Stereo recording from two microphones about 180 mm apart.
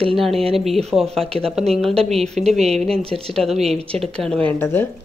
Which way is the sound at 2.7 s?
35° right (ahead or behind).